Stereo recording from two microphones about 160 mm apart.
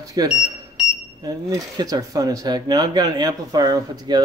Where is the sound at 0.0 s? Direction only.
25° right (ahead or behind).